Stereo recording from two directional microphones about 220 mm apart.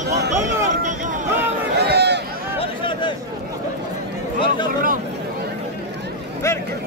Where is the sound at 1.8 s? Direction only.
50° right (ahead or behind).